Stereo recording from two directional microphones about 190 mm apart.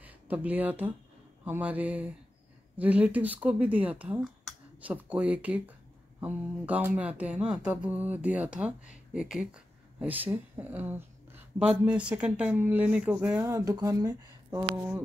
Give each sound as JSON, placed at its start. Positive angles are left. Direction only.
{"t": 0.0, "sound": "speech", "side_deg": -10}